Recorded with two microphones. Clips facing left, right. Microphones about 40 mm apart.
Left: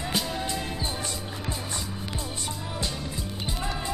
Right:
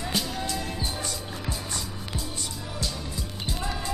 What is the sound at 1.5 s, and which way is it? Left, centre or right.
Music, left.